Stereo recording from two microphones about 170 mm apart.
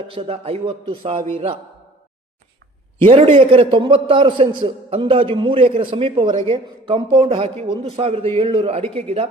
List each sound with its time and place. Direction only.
0.1 s a man's voice: 35° right (ahead or behind)
3.0 s a man's voice: 40° right (ahead or behind)